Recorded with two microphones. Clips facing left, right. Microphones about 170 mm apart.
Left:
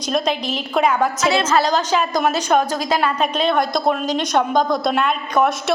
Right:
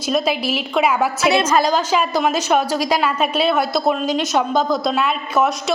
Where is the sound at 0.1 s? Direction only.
5° right (ahead or behind).